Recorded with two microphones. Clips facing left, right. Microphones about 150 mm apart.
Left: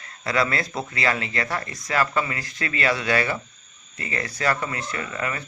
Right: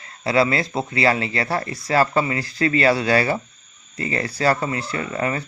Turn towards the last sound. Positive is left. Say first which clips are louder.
# right 5 dB
turn(degrees=-30)  # may be behind; listen again after turning